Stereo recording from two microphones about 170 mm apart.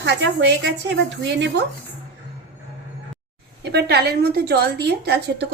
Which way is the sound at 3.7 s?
75° right (ahead or behind).